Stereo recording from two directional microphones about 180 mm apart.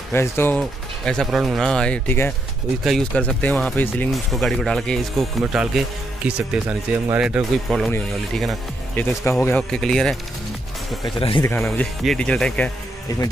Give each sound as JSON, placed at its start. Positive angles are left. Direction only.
{"t": 0.1, "sound": "speech", "side_deg": 10}
{"t": 0.6, "sound": "speech", "side_deg": 0}
{"t": 9.3, "sound": "speech", "side_deg": 5}
{"t": 11.1, "sound": "speech", "side_deg": 30}
{"t": 11.4, "sound": "speech", "side_deg": 10}
{"t": 13.1, "sound": "speech", "side_deg": 20}